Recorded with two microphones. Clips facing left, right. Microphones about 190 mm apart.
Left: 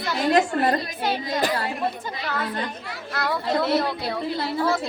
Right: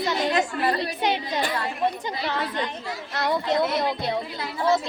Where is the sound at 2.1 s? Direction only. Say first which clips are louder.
Right 2 dB; 35° right (ahead or behind).